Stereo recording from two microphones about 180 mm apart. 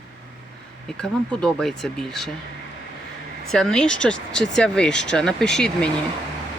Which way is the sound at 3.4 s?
Centre (ahead or behind).